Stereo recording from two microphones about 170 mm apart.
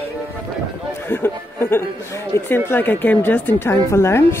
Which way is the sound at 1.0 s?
15° left (ahead or behind).